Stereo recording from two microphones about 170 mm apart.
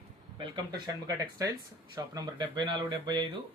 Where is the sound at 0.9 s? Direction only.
20° right (ahead or behind).